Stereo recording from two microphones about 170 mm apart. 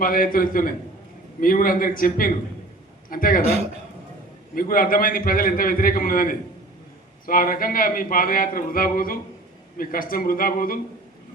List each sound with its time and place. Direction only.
0.0 s speech: 55° left (ahead or behind)
4.5 s speech: 55° left (ahead or behind)